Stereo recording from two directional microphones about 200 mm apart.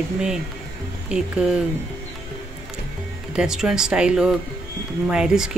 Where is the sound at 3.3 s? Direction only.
5° right (ahead or behind).